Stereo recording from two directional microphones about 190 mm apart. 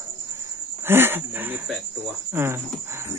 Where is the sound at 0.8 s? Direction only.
10° right (ahead or behind).